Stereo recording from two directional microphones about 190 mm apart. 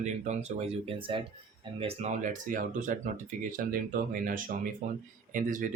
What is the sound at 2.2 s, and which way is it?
Speech, 45° right (ahead or behind).